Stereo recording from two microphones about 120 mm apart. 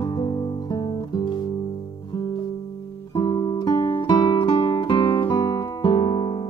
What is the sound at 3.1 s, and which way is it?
Music, 35° left (ahead or behind).